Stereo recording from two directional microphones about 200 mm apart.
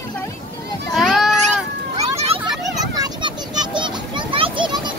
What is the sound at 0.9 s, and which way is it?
Children playing, centre (ahead or behind).